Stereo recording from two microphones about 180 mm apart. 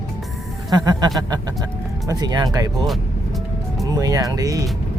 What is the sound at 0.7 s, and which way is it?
Speech, 20° right (ahead or behind).